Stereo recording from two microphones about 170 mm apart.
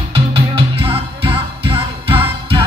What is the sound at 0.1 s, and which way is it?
Music, 30° right (ahead or behind).